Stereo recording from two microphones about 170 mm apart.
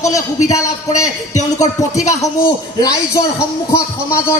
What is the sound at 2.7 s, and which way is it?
Speech, 20° left (ahead or behind).